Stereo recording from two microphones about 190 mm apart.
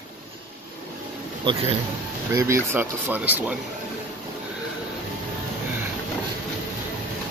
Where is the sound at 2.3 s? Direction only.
15° right (ahead or behind).